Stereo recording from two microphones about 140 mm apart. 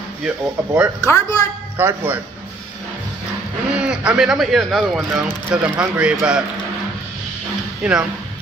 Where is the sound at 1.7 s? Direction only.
15° right (ahead or behind).